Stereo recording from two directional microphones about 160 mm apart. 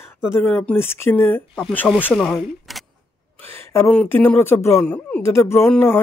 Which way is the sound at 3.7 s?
15° left (ahead or behind).